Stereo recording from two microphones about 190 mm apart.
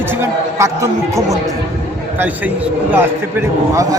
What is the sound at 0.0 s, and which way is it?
A man's voice, 10° right (ahead or behind).